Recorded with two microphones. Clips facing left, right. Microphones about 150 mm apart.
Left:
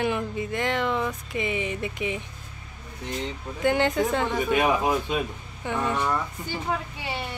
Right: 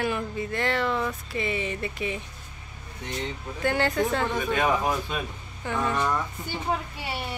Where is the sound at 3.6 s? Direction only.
20° left (ahead or behind).